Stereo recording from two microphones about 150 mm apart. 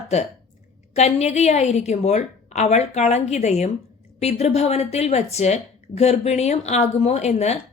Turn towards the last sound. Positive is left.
turn(degrees=45)  # may be behind; listen again after turning